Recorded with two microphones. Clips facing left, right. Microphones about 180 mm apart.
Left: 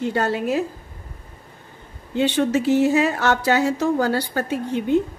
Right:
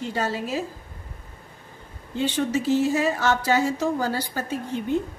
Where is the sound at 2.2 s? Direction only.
65° left (ahead or behind).